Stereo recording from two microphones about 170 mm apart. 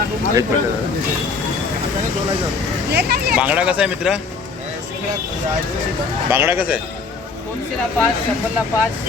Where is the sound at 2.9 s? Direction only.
70° right (ahead or behind).